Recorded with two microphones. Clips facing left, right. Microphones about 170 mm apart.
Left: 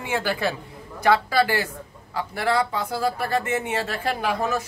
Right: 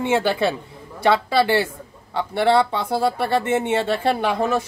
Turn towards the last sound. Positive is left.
turn(degrees=-30)  # may be behind; listen again after turning